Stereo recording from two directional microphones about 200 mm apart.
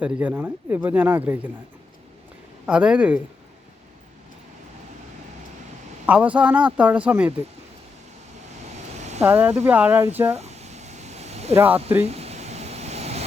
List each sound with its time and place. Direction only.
0.0 s speech: 5° right (ahead or behind)
2.6 s speech: 5° right (ahead or behind)
6.1 s speech: 5° right (ahead or behind)
9.0 s vehicle: 35° right (ahead or behind)
9.2 s speech: 5° right (ahead or behind)
10.3 s a sound: 35° right (ahead or behind)
11.5 s speech: 10° right (ahead or behind)
12.0 s a sound: 30° right (ahead or behind)